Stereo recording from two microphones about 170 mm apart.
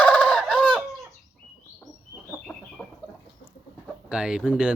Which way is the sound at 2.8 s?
15° left (ahead or behind).